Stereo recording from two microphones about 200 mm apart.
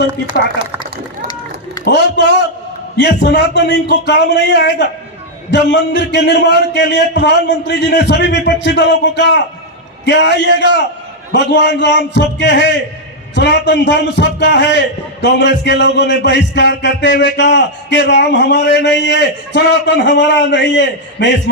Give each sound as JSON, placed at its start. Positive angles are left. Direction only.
{"t": 1.8, "sound": "a man's voice", "side_deg": 60}